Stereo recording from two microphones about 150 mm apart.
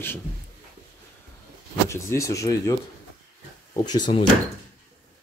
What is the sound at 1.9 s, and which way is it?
Speech, 20° left (ahead or behind).